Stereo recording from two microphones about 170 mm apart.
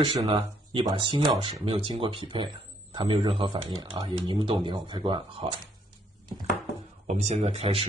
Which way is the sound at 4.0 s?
35° right (ahead or behind).